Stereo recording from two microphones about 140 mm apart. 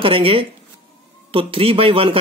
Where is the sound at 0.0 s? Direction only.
40° right (ahead or behind).